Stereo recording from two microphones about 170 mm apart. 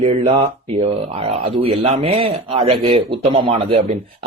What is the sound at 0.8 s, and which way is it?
A man's voice, 35° right (ahead or behind).